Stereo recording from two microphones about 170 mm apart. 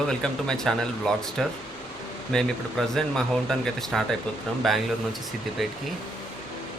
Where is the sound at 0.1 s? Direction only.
5° left (ahead or behind).